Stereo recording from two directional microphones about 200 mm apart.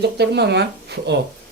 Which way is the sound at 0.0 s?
55° right (ahead or behind).